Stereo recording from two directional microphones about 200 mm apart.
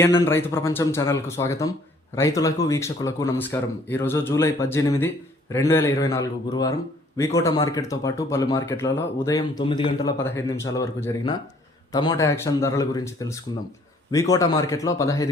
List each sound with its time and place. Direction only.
0.0 s speech: 10° left (ahead or behind)